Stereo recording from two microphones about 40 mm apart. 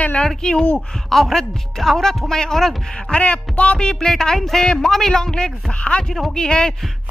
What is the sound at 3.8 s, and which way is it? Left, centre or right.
A man's voice, centre.